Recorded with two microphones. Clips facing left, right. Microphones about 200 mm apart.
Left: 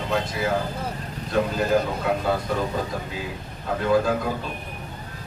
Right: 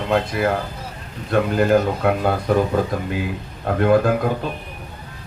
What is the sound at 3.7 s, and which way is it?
Speech, 60° right (ahead or behind).